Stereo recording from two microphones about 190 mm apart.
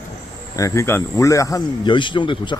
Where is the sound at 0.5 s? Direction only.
15° left (ahead or behind).